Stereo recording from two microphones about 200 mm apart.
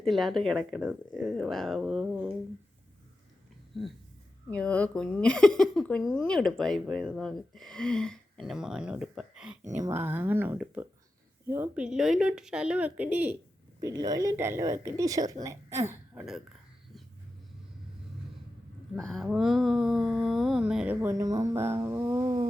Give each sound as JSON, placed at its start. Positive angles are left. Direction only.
{"t": 0.0, "sound": "a woman's voice", "side_deg": 0}
{"t": 3.7, "sound": "a woman's voice", "side_deg": 0}
{"t": 18.9, "sound": "a woman's voice", "side_deg": 0}